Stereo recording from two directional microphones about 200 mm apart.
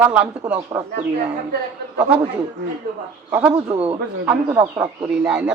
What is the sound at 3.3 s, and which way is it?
Speech, 5° right (ahead or behind).